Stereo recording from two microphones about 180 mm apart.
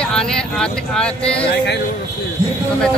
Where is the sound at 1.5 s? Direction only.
70° left (ahead or behind).